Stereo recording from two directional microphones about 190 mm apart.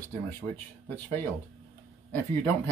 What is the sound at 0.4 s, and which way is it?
Speech, centre (ahead or behind).